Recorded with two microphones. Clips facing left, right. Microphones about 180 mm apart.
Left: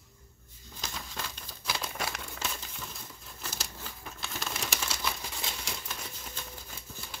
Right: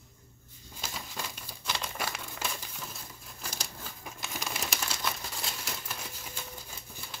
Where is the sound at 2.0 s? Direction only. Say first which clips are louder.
Even; centre (ahead or behind).